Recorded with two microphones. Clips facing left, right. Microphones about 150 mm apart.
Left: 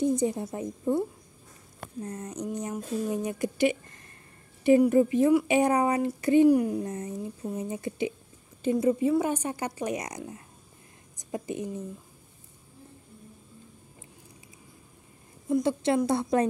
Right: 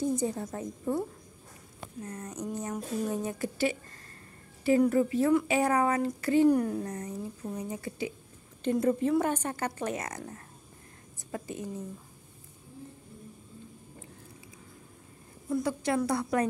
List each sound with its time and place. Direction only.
0.0 s speech: 20° left (ahead or behind)
2.0 s speech: 25° left (ahead or behind)
8.6 s a woman's voice: 10° left (ahead or behind)
15.5 s speech: 25° left (ahead or behind)